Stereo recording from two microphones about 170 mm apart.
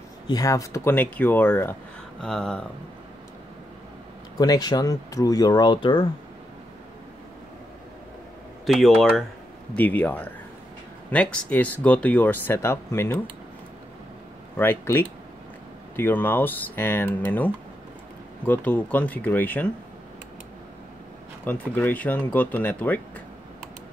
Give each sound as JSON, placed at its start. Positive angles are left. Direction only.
{"t": 0.3, "sound": "speech", "side_deg": 20}
{"t": 4.4, "sound": "speech", "side_deg": 25}
{"t": 8.6, "sound": "speech", "side_deg": 0}
{"t": 14.6, "sound": "speech", "side_deg": 15}
{"t": 21.5, "sound": "speech", "side_deg": 10}